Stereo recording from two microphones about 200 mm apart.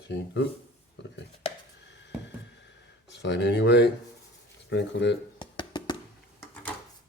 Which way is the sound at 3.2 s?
60° left (ahead or behind).